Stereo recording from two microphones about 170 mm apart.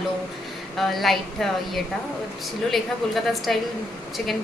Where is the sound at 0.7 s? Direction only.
Centre (ahead or behind).